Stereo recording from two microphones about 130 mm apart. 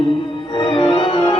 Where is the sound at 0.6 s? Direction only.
35° left (ahead or behind).